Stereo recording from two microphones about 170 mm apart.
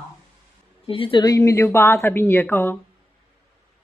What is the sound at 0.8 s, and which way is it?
A woman's voice, 30° left (ahead or behind).